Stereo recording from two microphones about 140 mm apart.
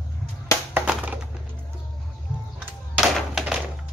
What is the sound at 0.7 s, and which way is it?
Crushing, 10° right (ahead or behind).